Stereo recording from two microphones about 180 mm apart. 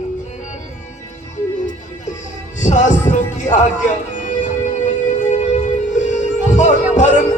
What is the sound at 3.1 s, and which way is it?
Speech, 40° left (ahead or behind).